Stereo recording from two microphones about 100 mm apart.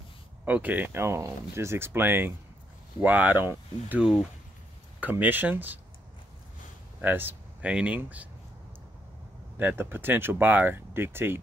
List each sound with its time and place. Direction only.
0.5 s speech: 15° right (ahead or behind)
1.0 s speech: 25° right (ahead or behind)
5.1 s speech: 20° right (ahead or behind)
7.0 s a sound: 20° right (ahead or behind)
7.7 s speech: 10° right (ahead or behind)
9.6 s speech: 20° right (ahead or behind)